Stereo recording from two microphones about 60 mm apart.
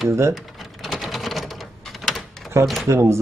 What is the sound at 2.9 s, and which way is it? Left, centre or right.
Speech, right.